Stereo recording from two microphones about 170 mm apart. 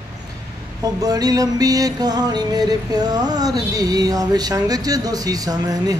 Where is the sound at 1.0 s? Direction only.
20° right (ahead or behind).